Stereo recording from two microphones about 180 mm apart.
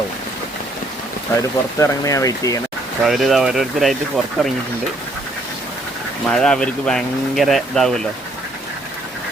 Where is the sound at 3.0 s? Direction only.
Centre (ahead or behind).